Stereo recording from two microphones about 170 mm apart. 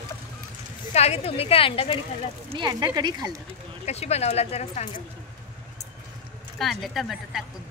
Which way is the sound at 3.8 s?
40° left (ahead or behind).